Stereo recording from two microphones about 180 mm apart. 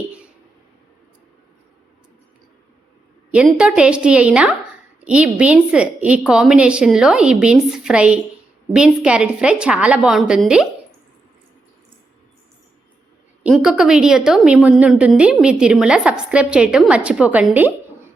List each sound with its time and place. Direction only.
3.3 s a woman's voice: 5° right (ahead or behind)
13.4 s a woman's voice: 5° right (ahead or behind)